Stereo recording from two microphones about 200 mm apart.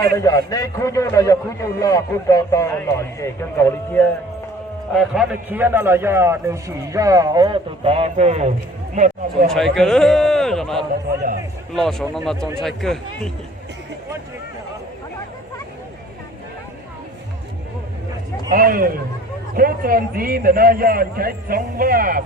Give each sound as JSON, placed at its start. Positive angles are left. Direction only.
{"t": 0.2, "sound": "a man's voice", "side_deg": 15}
{"t": 4.9, "sound": "a man's voice", "side_deg": -5}
{"t": 9.7, "sound": "a man's voice", "side_deg": 5}
{"t": 18.5, "sound": "a man's voice", "side_deg": -45}